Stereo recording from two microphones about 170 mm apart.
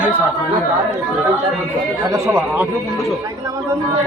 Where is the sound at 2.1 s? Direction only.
10° right (ahead or behind).